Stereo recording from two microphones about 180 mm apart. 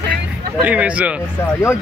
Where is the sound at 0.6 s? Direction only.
5° right (ahead or behind).